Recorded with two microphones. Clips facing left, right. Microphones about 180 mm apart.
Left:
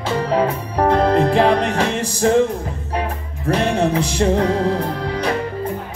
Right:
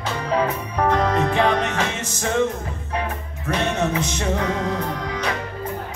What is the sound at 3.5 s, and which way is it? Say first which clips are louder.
Music: left 5 dB; 35° left (ahead or behind).